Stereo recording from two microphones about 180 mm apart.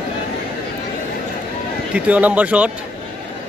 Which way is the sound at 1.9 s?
5° right (ahead or behind).